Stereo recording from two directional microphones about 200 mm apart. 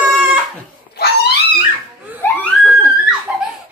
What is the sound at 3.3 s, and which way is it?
Giggle, 10° right (ahead or behind).